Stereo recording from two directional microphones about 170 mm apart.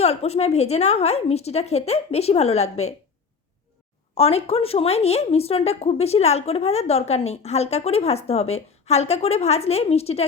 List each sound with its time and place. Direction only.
0.0 s a woman's voice: 35° left (ahead or behind)
4.1 s a woman's voice: 35° left (ahead or behind)